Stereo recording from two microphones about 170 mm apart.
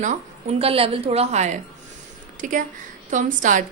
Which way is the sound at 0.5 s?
35° right (ahead or behind).